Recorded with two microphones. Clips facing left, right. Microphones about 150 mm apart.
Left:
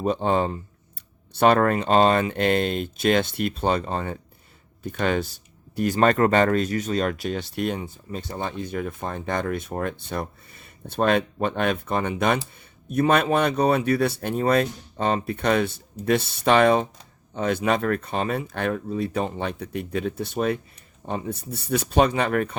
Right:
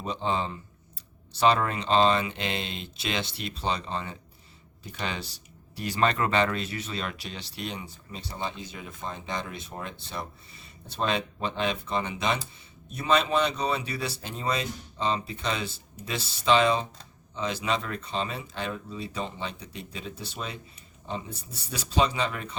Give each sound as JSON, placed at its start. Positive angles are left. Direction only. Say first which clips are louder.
{"t": 0.0, "sound": "speech", "louder": "left 7 dB", "side_deg": 50}